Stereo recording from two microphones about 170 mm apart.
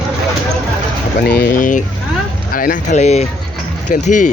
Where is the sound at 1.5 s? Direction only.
50° left (ahead or behind).